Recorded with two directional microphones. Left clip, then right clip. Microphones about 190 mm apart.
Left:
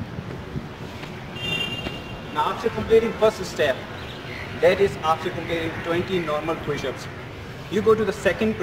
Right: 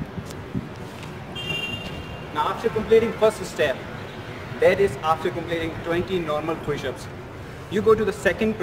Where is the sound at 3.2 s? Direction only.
15° right (ahead or behind).